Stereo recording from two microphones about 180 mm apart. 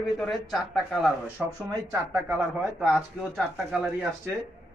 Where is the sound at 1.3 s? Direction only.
20° right (ahead or behind).